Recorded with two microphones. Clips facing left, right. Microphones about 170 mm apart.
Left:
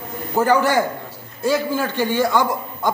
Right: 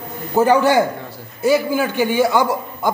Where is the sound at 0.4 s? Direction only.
15° right (ahead or behind).